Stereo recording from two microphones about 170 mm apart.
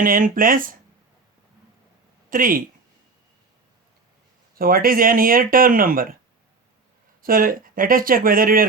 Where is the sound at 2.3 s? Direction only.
55° right (ahead or behind).